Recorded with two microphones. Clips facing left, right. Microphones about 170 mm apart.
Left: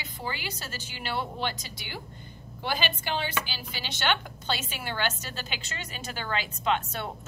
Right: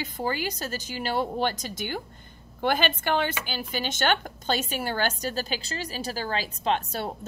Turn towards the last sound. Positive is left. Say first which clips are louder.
# right 2 dB
turn(degrees=-35)  # may be behind; listen again after turning